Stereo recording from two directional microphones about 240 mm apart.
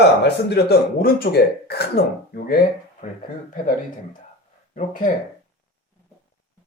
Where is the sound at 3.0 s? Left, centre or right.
Left.